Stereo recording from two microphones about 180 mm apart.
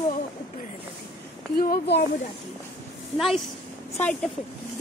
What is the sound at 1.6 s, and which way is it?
Speech, 60° left (ahead or behind).